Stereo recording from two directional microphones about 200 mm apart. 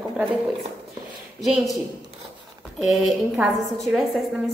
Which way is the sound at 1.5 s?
Centre (ahead or behind).